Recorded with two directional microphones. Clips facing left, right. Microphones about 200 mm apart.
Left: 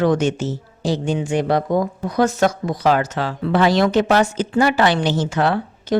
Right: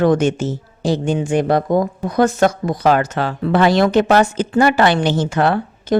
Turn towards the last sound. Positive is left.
turn(degrees=-55)  # may be behind; listen again after turning